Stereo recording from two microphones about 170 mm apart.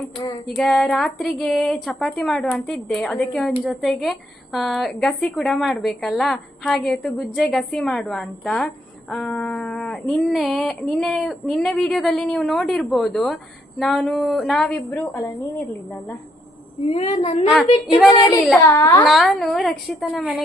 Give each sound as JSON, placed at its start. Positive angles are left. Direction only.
{"t": 0.4, "sound": "a woman's voice", "side_deg": 0}
{"t": 16.8, "sound": "speech", "side_deg": 40}
{"t": 18.6, "sound": "a child's voice", "side_deg": 20}
{"t": 19.0, "sound": "a woman's voice", "side_deg": 0}